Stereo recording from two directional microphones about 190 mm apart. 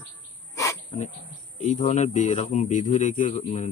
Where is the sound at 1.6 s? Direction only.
35° left (ahead or behind).